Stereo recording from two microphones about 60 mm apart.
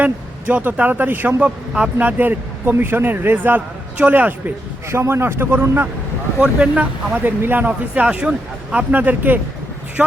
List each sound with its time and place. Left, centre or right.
0.0 s speech: right
1.4 s speech: right
4.9 s speech: right
6.4 s speech: right
8.1 s speech: right
10.0 s a woman's voice: centre